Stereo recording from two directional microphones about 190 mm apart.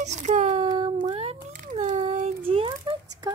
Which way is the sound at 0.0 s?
40° right (ahead or behind).